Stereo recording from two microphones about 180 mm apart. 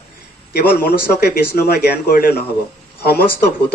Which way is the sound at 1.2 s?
60° left (ahead or behind).